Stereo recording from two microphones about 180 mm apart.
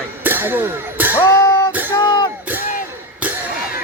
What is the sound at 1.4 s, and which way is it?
Music, 25° left (ahead or behind).